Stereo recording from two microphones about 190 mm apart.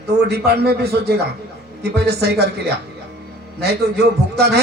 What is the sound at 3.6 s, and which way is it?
Speech, 60° right (ahead or behind).